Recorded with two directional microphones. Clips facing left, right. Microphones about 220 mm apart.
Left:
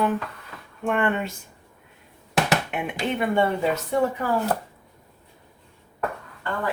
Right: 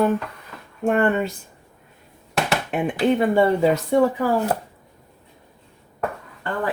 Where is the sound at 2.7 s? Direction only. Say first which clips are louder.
Right 7 dB; 35° right (ahead or behind).